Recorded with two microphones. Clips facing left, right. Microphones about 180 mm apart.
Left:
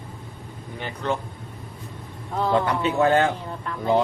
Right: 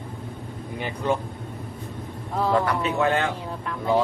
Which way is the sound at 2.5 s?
25° left (ahead or behind).